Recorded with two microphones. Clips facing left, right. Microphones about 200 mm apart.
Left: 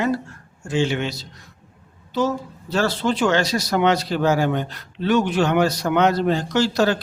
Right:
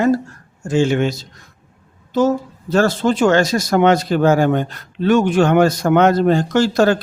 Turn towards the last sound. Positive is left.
turn(degrees=-50)  # may be behind; listen again after turning